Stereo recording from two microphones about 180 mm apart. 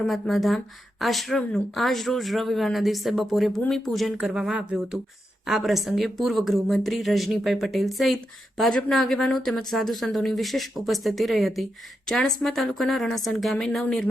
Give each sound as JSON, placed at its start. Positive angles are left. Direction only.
{"t": 0.0, "sound": "a woman's voice", "side_deg": 0}